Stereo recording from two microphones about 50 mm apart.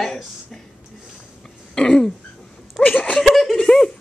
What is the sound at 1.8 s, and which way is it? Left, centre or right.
Speech, centre.